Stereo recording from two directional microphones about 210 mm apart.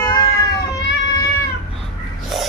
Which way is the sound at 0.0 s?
20° left (ahead or behind).